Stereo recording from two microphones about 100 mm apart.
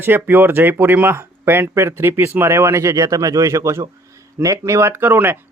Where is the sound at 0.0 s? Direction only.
20° right (ahead or behind).